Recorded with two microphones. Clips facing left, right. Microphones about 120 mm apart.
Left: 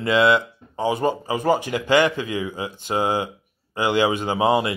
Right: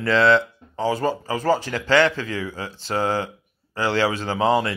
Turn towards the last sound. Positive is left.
turn(degrees=15)  # may be behind; listen again after turning